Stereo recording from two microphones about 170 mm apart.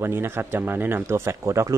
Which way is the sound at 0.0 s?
15° right (ahead or behind).